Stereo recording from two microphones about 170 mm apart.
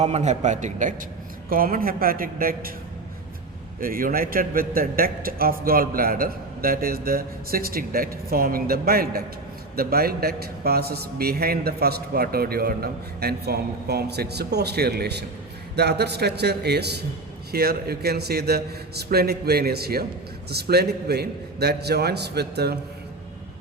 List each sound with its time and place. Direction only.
0.0 s a man's voice: 40° right (ahead or behind); by 2.6 s 60° right (ahead or behind)
3.8 s a man's voice: 55° right (ahead or behind); by 22.8 s 70° right (ahead or behind)